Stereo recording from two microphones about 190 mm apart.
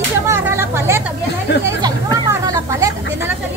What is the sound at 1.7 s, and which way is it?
Chatter, 20° right (ahead or behind).